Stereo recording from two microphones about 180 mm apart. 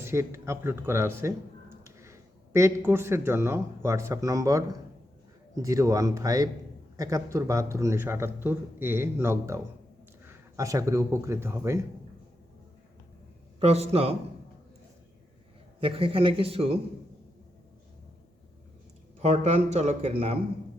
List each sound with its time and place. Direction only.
0.0 s a man's voice: 15° right (ahead or behind)
13.6 s speech: 35° right (ahead or behind)
15.8 s speech: 30° right (ahead or behind)
19.2 s speech: 40° right (ahead or behind)